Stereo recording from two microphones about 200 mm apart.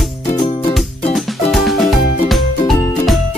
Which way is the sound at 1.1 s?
Centre (ahead or behind).